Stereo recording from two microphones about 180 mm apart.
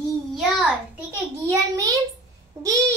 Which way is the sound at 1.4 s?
15° right (ahead or behind).